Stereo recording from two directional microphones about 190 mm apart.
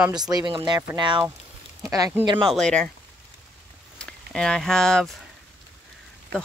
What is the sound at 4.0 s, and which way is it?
Speech, 5° left (ahead or behind).